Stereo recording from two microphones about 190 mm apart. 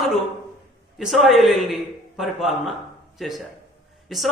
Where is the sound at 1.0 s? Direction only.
Centre (ahead or behind).